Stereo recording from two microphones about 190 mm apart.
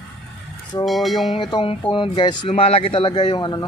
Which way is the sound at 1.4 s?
25° left (ahead or behind).